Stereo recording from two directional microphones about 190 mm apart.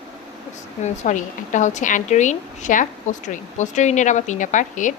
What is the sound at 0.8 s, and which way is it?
Speech, 40° left (ahead or behind).